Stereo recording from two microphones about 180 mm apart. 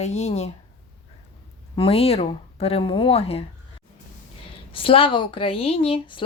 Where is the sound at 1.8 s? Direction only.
35° left (ahead or behind).